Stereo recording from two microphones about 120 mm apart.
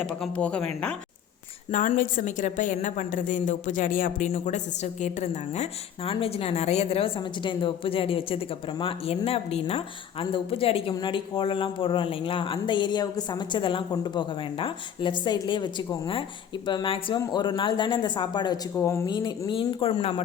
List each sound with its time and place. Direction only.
0.2 s speech: 10° left (ahead or behind)
1.7 s a woman's voice: 90° left
6.1 s a woman's voice: 50° left (ahead or behind)
18.8 s speech: 25° left (ahead or behind)
19.0 s speech: 40° left (ahead or behind); by 20.2 s 55° left (ahead or behind)